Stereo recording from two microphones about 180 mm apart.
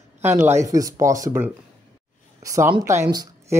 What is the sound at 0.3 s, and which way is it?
Speech, 15° right (ahead or behind).